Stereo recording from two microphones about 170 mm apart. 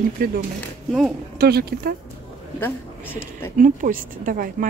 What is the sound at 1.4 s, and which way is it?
Speech, 65° right (ahead or behind).